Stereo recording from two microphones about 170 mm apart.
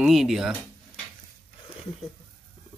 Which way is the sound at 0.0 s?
Centre (ahead or behind).